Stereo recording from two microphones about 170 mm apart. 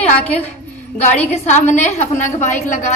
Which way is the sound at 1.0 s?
40° left (ahead or behind).